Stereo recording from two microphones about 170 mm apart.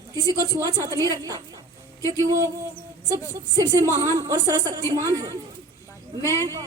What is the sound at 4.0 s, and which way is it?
Speech, 20° right (ahead or behind).